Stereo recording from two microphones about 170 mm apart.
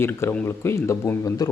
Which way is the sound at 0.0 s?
15° left (ahead or behind).